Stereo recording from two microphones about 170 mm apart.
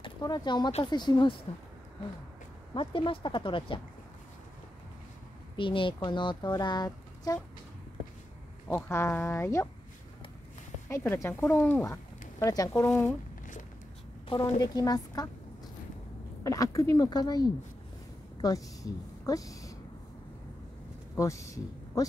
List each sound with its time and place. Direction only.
0.0 s speech: 25° left (ahead or behind)
2.7 s speech: 30° left (ahead or behind)
5.6 s speech: 30° left (ahead or behind)
8.6 s speech: 15° left (ahead or behind)
10.9 s speech: 15° left (ahead or behind)
12.8 s speech: 5° left (ahead or behind)
14.6 s speech: 20° left (ahead or behind)
16.4 s a woman's voice: 20° left (ahead or behind)
21.2 s speech: 20° left (ahead or behind)